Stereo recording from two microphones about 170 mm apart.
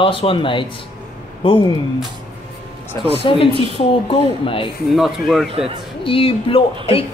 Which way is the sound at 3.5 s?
30° right (ahead or behind).